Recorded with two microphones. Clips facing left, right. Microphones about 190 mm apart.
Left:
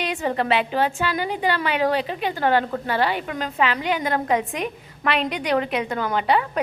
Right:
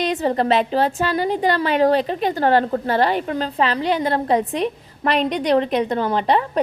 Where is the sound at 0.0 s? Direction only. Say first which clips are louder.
Right 4 dB; 40° right (ahead or behind).